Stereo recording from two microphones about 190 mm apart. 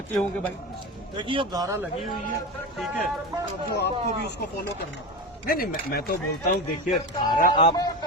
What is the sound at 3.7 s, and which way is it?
Speech, 60° left (ahead or behind).